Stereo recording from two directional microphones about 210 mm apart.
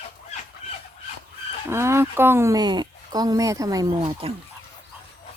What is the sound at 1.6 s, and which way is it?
Speech, 10° right (ahead or behind).